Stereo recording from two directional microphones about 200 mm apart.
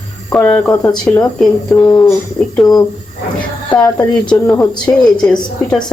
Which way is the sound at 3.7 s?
5° left (ahead or behind).